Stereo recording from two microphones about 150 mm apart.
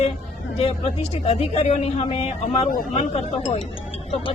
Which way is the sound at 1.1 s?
45° left (ahead or behind).